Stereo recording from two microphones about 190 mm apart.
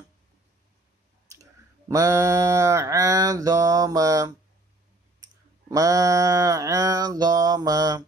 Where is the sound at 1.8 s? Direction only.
15° right (ahead or behind).